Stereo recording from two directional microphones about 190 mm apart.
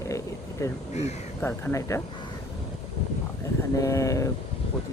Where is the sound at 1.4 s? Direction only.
10° left (ahead or behind).